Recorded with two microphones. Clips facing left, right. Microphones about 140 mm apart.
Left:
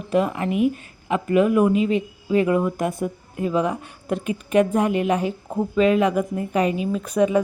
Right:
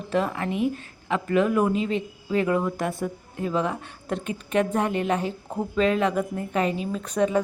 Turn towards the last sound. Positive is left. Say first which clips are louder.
# left 4 dB
turn(degrees=10)  # may be behind; listen again after turning